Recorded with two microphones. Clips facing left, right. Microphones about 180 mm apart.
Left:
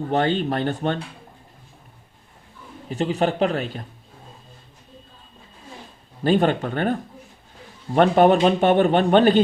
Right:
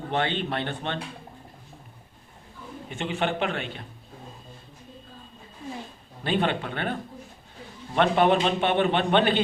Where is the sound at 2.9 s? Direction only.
35° left (ahead or behind).